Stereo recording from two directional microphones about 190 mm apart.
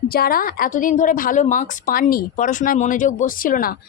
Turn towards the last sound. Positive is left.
turn(degrees=50)  # may be behind; listen again after turning